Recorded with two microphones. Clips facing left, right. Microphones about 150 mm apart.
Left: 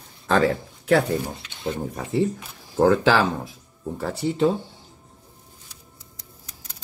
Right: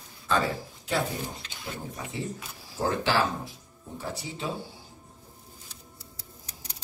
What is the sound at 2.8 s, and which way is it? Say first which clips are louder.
Speech: left 8 dB; 90° left.